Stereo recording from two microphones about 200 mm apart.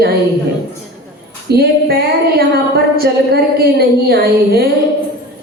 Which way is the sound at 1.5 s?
50° right (ahead or behind).